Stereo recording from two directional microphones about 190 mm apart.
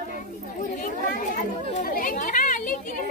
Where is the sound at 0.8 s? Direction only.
45° left (ahead or behind).